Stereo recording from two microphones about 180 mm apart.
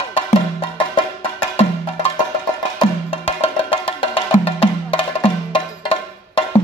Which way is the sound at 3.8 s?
30° left (ahead or behind).